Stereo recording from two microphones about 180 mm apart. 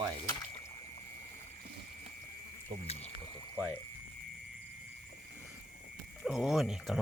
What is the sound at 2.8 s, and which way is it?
Speech, 35° left (ahead or behind).